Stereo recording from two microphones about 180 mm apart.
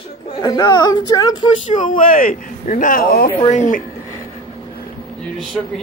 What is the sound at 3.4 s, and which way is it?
Speech, 45° left (ahead or behind).